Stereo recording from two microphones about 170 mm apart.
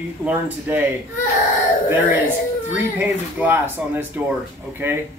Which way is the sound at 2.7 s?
10° right (ahead or behind).